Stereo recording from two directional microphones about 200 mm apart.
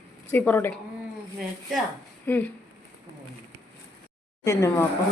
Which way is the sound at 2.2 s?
10° left (ahead or behind).